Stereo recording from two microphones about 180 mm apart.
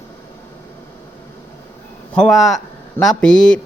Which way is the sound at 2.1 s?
Centre (ahead or behind).